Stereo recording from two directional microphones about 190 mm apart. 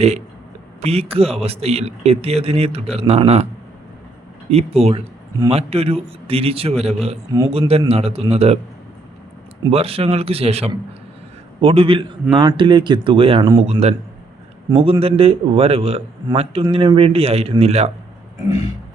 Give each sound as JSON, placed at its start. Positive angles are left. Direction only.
{"t": 0.8, "sound": "a man's voice", "side_deg": -30}
{"t": 4.5, "sound": "a man's voice", "side_deg": -35}
{"t": 9.6, "sound": "a man's voice", "side_deg": -30}
{"t": 14.7, "sound": "a man's voice", "side_deg": -20}